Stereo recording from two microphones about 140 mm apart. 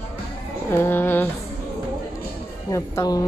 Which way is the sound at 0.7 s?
15° left (ahead or behind).